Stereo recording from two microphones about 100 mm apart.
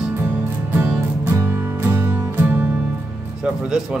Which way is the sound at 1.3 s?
20° right (ahead or behind).